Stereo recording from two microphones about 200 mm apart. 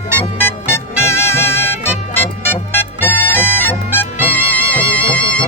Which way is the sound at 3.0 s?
10° left (ahead or behind).